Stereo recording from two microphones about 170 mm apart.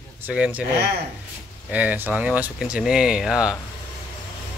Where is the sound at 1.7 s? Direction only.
10° right (ahead or behind).